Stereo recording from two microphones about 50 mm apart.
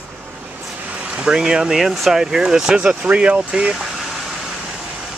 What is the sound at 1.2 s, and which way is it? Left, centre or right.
Speech, centre.